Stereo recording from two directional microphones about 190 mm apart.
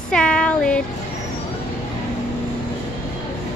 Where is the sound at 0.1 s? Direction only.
5° left (ahead or behind).